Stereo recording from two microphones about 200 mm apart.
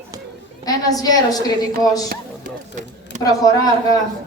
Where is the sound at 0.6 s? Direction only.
20° left (ahead or behind).